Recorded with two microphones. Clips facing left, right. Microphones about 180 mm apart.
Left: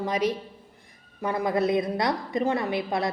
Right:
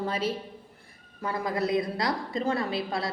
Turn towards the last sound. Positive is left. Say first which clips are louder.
# left 3 dB
turn(degrees=20)  # may be behind; listen again after turning